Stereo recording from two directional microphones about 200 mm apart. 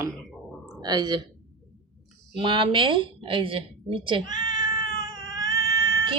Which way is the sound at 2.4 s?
25° right (ahead or behind).